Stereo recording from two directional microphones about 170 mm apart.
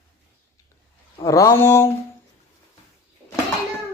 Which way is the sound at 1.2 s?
20° left (ahead or behind).